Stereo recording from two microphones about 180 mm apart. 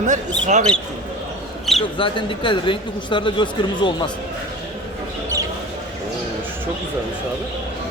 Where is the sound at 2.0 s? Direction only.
25° left (ahead or behind).